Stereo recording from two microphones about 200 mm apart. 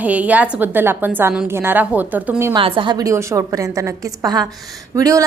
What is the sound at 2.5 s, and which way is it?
A woman's voice, 25° right (ahead or behind).